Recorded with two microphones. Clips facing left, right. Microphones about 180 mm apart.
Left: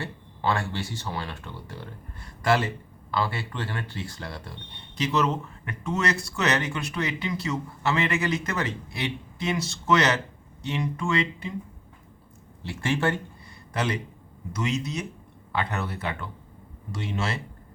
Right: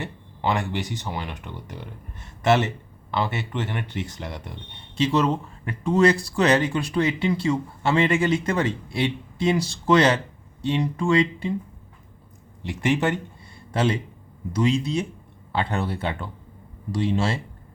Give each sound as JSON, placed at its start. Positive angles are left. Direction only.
{"t": 0.0, "sound": "speech", "side_deg": -20}
{"t": 12.6, "sound": "speech", "side_deg": -20}